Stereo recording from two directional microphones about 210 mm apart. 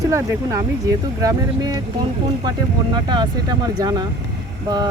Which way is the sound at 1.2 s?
15° right (ahead or behind).